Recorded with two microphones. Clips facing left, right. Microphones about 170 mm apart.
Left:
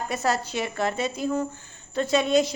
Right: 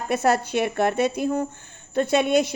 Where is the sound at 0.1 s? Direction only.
55° right (ahead or behind).